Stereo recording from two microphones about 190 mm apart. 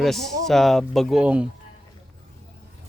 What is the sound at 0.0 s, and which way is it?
Speech, centre (ahead or behind).